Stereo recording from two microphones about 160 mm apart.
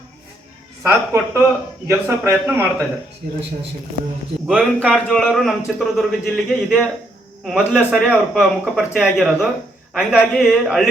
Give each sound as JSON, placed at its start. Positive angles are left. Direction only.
{"t": 0.8, "sound": "a man's voice", "side_deg": -15}
{"t": 4.4, "sound": "a man's voice", "side_deg": -5}